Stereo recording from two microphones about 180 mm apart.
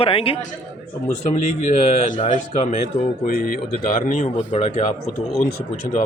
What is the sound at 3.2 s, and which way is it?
Speech, 50° left (ahead or behind).